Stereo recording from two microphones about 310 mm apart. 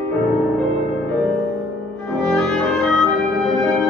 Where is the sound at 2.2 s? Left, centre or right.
Centre.